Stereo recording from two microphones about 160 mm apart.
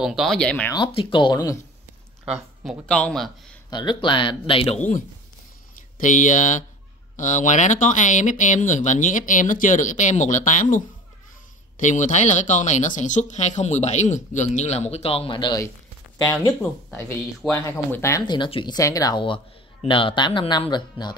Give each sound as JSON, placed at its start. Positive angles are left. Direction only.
{"t": 0.0, "sound": "a man's voice", "side_deg": 0}
{"t": 0.7, "sound": "speech", "side_deg": 30}
{"t": 2.6, "sound": "a man's voice", "side_deg": 0}
{"t": 3.7, "sound": "speech", "side_deg": 30}
{"t": 17.5, "sound": "speech", "side_deg": 15}
{"t": 18.2, "sound": "speech", "side_deg": 30}